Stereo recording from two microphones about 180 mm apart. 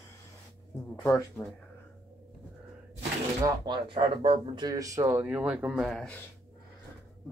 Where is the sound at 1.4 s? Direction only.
10° left (ahead or behind).